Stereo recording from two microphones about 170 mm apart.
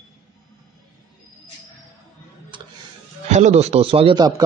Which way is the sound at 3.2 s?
45° right (ahead or behind).